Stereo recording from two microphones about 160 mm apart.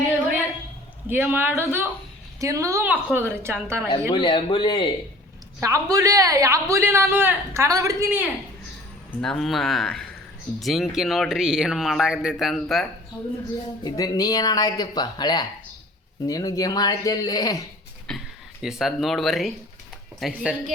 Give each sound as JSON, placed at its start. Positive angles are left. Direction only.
{"t": 1.0, "sound": "a woman's voice", "side_deg": -10}
{"t": 4.1, "sound": "speech", "side_deg": 30}
{"t": 5.5, "sound": "a man's voice", "side_deg": -20}
{"t": 9.2, "sound": "speech", "side_deg": 0}
{"t": 13.8, "sound": "speech", "side_deg": 25}
{"t": 18.1, "sound": "speech", "side_deg": 5}